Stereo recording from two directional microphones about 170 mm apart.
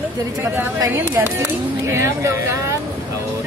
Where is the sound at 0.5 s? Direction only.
15° right (ahead or behind).